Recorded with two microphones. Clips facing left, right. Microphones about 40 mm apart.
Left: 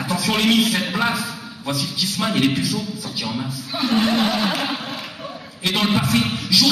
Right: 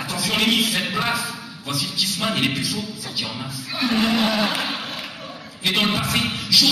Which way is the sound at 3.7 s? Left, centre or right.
Centre.